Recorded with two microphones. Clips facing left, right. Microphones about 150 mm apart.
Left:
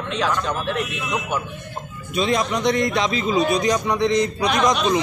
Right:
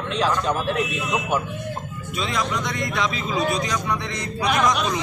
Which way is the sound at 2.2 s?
25° left (ahead or behind).